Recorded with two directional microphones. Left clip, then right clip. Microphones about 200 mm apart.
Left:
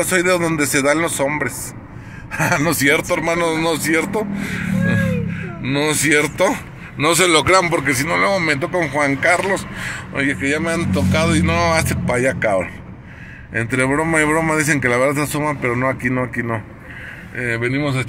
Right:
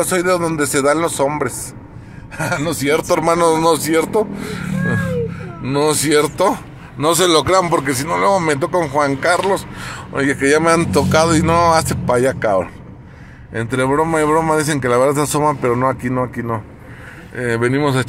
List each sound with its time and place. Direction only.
0.0 s speech: 5° right (ahead or behind)
2.3 s a man's voice: 10° left (ahead or behind)
3.0 s speech: 20° right (ahead or behind)
5.6 s speech: 10° right (ahead or behind)
8.3 s speech: 20° right (ahead or behind)
10.2 s speech: 30° right (ahead or behind); by 16.6 s 5° right (ahead or behind)
17.6 s speech: 30° right (ahead or behind)